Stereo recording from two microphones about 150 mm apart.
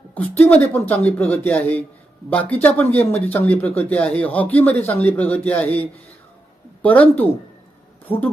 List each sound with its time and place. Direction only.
0.1 s speech: 10° left (ahead or behind)
6.8 s speech: 10° left (ahead or behind)